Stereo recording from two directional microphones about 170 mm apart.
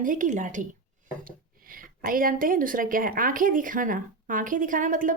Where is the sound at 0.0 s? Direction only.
50° right (ahead or behind).